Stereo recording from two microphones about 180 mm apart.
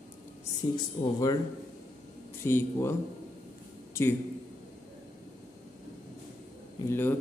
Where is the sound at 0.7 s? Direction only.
20° left (ahead or behind).